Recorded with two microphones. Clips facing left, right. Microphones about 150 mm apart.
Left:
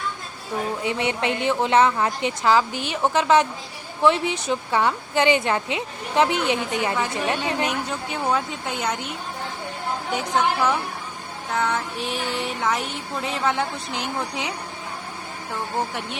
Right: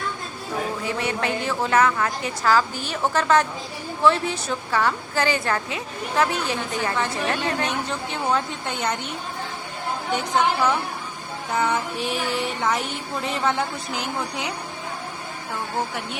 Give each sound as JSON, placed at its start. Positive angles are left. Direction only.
{"t": 0.9, "sound": "a woman's voice", "side_deg": 25}
{"t": 8.3, "sound": "music", "side_deg": 5}
{"t": 10.1, "sound": "a woman's voice", "side_deg": 5}
{"t": 11.5, "sound": "music", "side_deg": 0}